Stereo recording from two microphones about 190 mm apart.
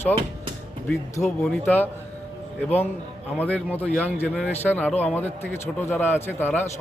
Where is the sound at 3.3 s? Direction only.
10° left (ahead or behind).